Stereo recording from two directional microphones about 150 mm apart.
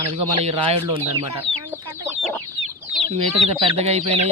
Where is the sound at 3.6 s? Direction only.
45° right (ahead or behind).